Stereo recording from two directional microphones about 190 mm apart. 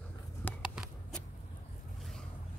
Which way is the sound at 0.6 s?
5° right (ahead or behind).